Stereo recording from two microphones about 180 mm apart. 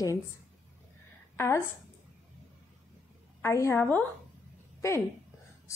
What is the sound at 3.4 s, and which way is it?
Speech, 15° left (ahead or behind).